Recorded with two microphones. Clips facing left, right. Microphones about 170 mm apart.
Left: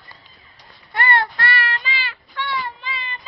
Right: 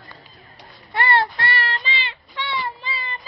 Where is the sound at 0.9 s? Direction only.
30° right (ahead or behind).